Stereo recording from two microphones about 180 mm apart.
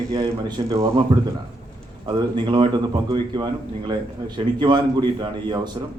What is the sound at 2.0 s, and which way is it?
A man's voice, 25° right (ahead or behind).